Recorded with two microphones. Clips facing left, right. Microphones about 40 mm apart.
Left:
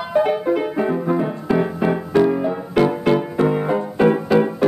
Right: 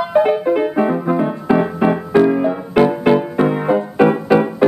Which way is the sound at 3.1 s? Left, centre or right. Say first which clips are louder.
Right 3 dB; centre.